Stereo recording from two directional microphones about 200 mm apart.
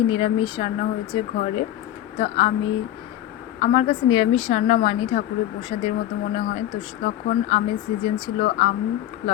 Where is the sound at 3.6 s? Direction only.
30° left (ahead or behind).